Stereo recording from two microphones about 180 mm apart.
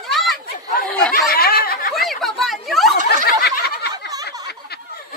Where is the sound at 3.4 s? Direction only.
60° left (ahead or behind).